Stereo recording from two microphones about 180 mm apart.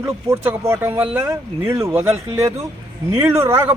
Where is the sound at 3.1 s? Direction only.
15° right (ahead or behind).